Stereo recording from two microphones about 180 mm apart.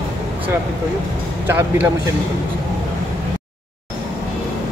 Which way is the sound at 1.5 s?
10° right (ahead or behind).